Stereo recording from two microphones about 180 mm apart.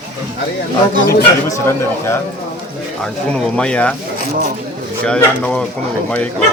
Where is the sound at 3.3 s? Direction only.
5° left (ahead or behind).